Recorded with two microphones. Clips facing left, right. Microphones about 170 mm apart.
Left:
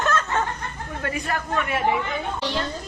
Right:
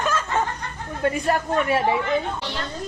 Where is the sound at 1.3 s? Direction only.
35° right (ahead or behind).